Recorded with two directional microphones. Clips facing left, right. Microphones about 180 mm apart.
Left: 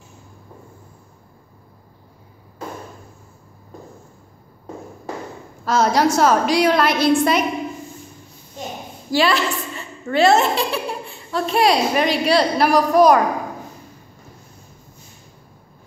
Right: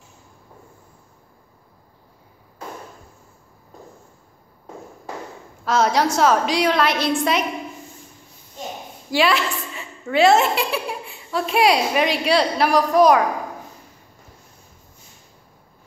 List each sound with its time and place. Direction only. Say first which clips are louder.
5.7 s a woman's voice: left 2 dB; centre (ahead or behind)
9.1 s a woman's voice: left 1 dB; centre (ahead or behind)